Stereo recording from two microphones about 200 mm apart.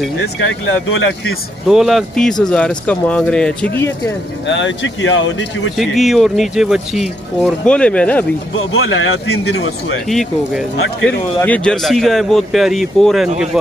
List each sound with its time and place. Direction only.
0.8 s speech: 85° left
1.7 s speech: centre (ahead or behind)
4.5 s speech: 65° left (ahead or behind)
5.8 s speech: centre (ahead or behind)
8.5 s speech: 85° left
9.4 s speech: 55° left (ahead or behind)
10.0 s speech: centre (ahead or behind)